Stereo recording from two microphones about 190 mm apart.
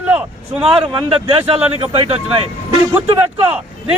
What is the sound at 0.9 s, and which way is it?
A man's voice, 25° right (ahead or behind).